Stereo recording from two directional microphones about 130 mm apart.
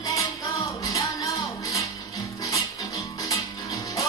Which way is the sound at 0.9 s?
25° left (ahead or behind).